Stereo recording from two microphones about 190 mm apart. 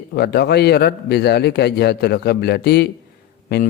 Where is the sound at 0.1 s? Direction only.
55° left (ahead or behind).